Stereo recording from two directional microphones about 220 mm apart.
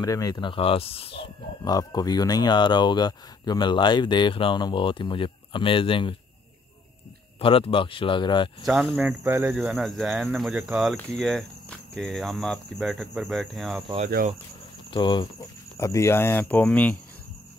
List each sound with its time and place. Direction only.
0.0 s speech: 15° left (ahead or behind)
7.3 s speech: 25° left (ahead or behind)
8.6 s cricket: centre (ahead or behind)
9.2 s speech: 10° right (ahead or behind)
9.5 s cricket: centre (ahead or behind)
13.9 s speech: 35° right (ahead or behind)
14.9 s speech: 20° left (ahead or behind); by 16.9 s 5° left (ahead or behind)